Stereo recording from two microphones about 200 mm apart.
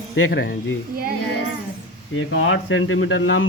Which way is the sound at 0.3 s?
50° left (ahead or behind).